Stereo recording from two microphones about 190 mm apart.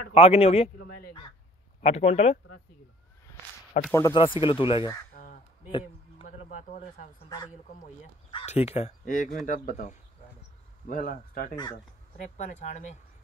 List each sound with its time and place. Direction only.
0.1 s speech: 30° left (ahead or behind)
1.8 s speech: 35° left (ahead or behind)
3.9 s speech: 15° left (ahead or behind)
5.1 s crow: 45° left (ahead or behind)
5.7 s a sound: 25° left (ahead or behind)
6.2 s a sound: 40° left (ahead or behind)
8.3 s speech: 30° left (ahead or behind)